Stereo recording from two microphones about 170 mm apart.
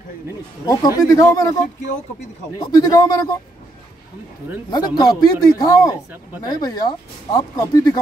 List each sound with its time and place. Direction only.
0.7 s speech: 20° left (ahead or behind)
2.7 s speech: 20° left (ahead or behind)
4.6 s speech: 25° left (ahead or behind)